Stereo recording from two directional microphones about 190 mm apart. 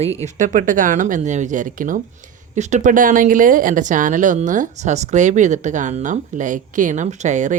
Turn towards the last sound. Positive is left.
turn(degrees=-40)  # may be behind; listen again after turning